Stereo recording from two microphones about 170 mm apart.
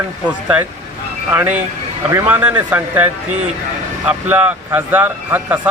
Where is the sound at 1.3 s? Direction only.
10° right (ahead or behind).